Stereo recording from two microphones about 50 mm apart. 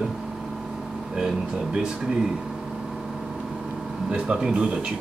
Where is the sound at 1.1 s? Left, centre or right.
Centre.